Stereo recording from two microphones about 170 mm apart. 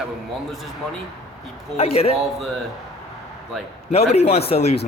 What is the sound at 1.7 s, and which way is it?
Speech, 35° left (ahead or behind).